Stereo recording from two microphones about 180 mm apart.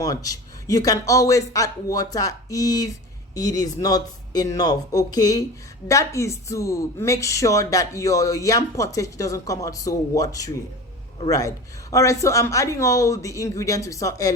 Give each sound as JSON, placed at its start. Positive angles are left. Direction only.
{"t": 0.0, "sound": "speech", "side_deg": 20}